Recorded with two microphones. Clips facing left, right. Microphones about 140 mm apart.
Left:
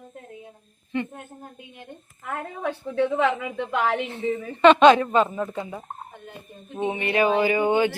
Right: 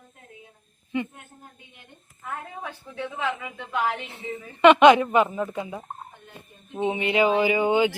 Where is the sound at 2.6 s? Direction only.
60° left (ahead or behind).